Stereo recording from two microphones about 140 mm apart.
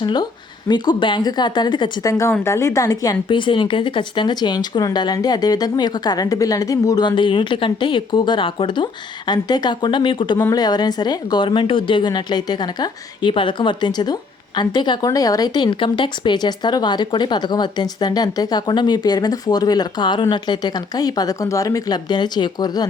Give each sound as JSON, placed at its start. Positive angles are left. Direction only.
{"t": 0.0, "sound": "a woman's voice", "side_deg": 30}